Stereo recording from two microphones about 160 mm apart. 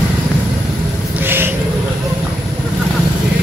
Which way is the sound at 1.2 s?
15° right (ahead or behind).